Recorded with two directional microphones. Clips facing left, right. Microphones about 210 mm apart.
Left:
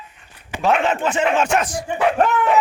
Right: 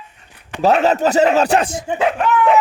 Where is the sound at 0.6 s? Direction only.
35° right (ahead or behind).